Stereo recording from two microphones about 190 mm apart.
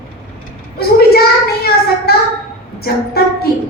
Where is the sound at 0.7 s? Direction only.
55° left (ahead or behind).